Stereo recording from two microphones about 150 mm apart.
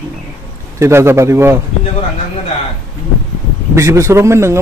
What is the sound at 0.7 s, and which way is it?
Speech, 20° right (ahead or behind).